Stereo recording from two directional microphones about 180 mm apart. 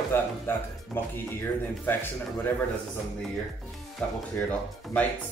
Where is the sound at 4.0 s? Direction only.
5° left (ahead or behind).